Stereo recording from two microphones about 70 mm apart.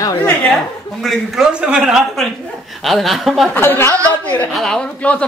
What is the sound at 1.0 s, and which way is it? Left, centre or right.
Speech, centre.